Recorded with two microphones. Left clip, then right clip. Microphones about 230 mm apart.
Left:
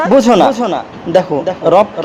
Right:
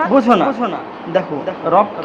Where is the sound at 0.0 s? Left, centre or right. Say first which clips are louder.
Left 5 dB; left.